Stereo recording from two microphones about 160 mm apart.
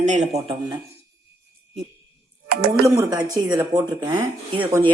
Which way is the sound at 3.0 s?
25° right (ahead or behind).